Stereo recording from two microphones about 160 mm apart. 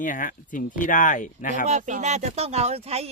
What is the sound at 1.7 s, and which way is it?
Speech, 50° right (ahead or behind).